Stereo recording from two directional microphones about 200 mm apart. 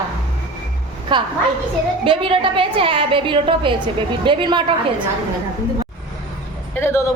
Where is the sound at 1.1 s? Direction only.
25° right (ahead or behind).